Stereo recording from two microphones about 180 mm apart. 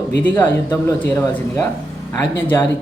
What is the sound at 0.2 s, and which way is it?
Speech, 10° left (ahead or behind).